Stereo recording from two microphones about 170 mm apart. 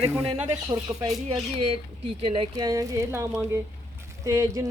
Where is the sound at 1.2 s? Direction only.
35° right (ahead or behind).